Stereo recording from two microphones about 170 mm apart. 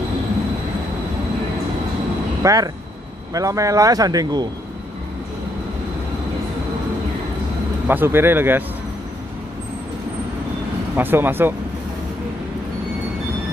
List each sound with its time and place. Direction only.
2.4 s a man's voice: 20° right (ahead or behind)
7.9 s speech: 10° right (ahead or behind)
11.0 s speech: 10° right (ahead or behind)